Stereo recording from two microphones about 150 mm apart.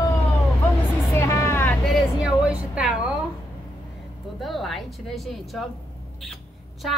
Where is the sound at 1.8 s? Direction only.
5° right (ahead or behind).